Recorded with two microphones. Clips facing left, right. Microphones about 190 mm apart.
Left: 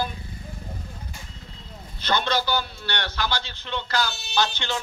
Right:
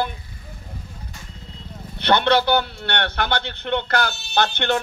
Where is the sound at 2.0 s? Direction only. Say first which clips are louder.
Right 7 dB; 65° right (ahead or behind).